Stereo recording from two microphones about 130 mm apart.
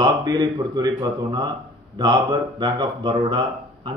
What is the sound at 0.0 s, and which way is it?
A man's voice, 30° right (ahead or behind).